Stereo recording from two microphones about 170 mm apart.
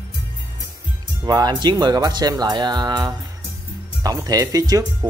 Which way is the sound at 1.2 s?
25° right (ahead or behind).